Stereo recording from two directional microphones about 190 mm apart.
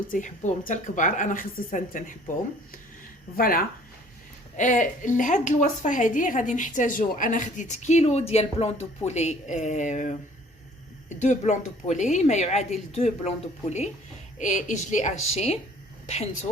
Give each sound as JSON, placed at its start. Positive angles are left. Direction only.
{"t": 0.1, "sound": "a woman's voice", "side_deg": 45}
{"t": 3.3, "sound": "a woman's voice", "side_deg": 50}
{"t": 11.2, "sound": "a woman's voice", "side_deg": 35}